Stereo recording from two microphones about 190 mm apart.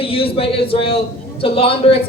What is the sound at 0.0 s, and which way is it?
A man's voice, 30° left (ahead or behind).